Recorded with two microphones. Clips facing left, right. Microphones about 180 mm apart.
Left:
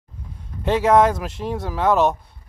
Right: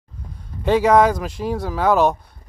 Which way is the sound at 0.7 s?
Centre (ahead or behind).